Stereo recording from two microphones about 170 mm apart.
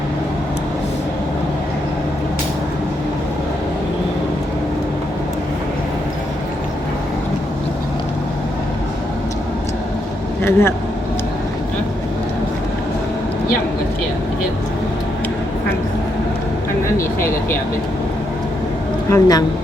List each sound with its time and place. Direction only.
10.4 s speech: 15° left (ahead or behind)
19.1 s a woman's voice: 20° left (ahead or behind)